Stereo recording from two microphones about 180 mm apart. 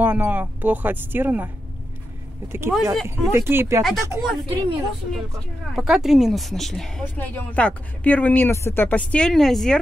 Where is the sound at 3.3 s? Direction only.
15° right (ahead or behind).